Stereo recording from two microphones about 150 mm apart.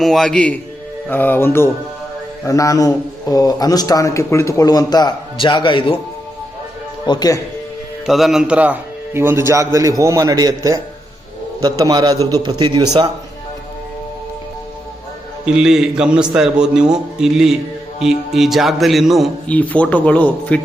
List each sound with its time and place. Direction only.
0.0 s a man's voice: 5° left (ahead or behind); by 6.0 s 35° left (ahead or behind)
7.0 s a man's voice: 30° left (ahead or behind)
8.0 s a man's voice: centre (ahead or behind); by 13.1 s 30° right (ahead or behind)
15.4 s a man's voice: 5° right (ahead or behind)